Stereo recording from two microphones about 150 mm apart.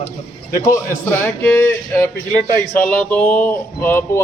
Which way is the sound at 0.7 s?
15° left (ahead or behind).